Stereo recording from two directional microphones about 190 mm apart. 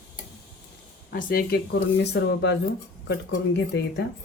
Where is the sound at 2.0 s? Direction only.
65° left (ahead or behind).